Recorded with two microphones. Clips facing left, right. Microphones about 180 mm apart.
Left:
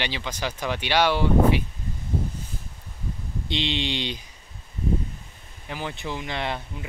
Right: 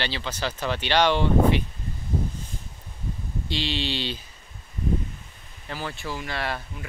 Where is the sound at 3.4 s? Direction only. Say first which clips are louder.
Left 1 dB; 20° left (ahead or behind).